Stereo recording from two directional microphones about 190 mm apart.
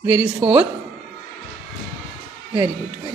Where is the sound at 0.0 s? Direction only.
10° right (ahead or behind).